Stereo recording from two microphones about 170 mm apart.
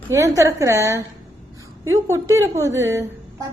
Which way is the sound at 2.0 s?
15° right (ahead or behind).